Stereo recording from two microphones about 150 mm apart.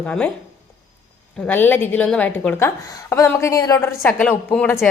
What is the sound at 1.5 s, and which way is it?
A woman's voice, 15° left (ahead or behind).